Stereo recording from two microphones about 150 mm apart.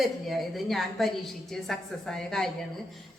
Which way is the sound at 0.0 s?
Centre (ahead or behind).